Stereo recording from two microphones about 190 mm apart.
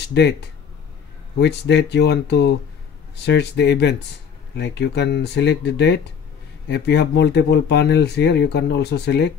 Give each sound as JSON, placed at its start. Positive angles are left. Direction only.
{"t": 1.4, "sound": "speech", "side_deg": 65}